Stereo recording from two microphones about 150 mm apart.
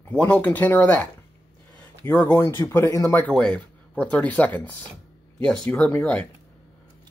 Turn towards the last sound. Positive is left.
turn(degrees=10)  # may be behind; listen again after turning